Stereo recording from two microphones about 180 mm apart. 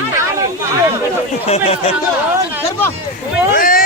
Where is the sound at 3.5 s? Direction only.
50° left (ahead or behind).